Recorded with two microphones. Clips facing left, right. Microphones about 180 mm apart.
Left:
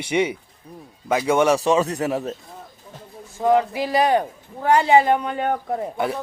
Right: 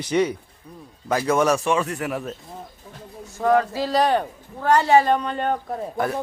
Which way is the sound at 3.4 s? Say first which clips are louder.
Left 1 dB; 15° left (ahead or behind).